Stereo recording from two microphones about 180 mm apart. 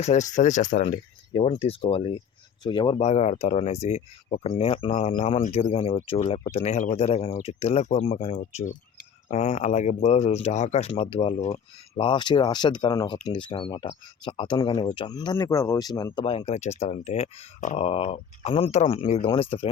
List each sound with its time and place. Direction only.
0.0 s speech: 40° left (ahead or behind)
3.1 s speech: 40° left (ahead or behind)
12.0 s speech: 25° left (ahead or behind)